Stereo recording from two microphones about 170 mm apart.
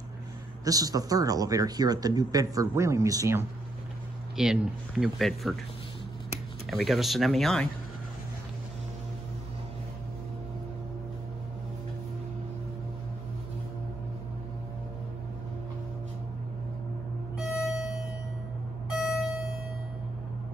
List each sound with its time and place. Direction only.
0.7 s speech: 20° right (ahead or behind)
4.4 s speech: 5° right (ahead or behind)
6.7 s speech: centre (ahead or behind)
18.9 s beep: centre (ahead or behind)